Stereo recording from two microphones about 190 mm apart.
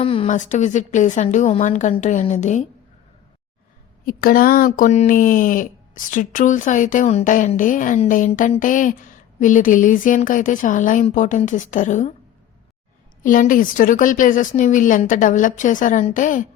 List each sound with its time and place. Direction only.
0.0 s a woman's voice: 30° left (ahead or behind)
4.0 s a woman's voice: 50° left (ahead or behind)
13.2 s speech: 45° left (ahead or behind)